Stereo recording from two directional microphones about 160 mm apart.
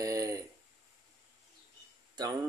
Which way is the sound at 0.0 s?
20° right (ahead or behind).